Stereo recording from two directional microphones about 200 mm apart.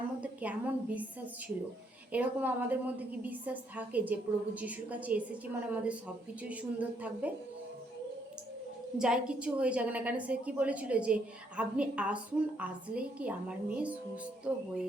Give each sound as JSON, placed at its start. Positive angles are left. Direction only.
{"t": 0.2, "sound": "a woman's voice", "side_deg": -5}
{"t": 2.1, "sound": "a woman's voice", "side_deg": -10}
{"t": 9.0, "sound": "a woman's voice", "side_deg": -5}